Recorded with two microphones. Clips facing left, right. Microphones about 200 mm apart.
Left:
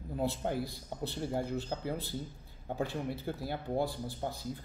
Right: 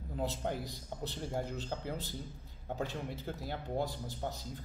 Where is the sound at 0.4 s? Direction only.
10° left (ahead or behind).